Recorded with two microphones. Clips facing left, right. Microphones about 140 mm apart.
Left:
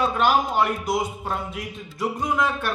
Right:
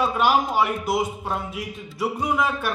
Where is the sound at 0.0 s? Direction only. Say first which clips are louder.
Even; 5° right (ahead or behind).